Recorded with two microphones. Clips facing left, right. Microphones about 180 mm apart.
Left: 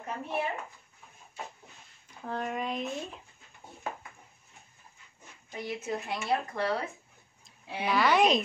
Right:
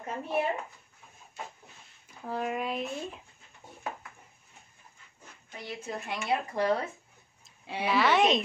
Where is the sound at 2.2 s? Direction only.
5° right (ahead or behind).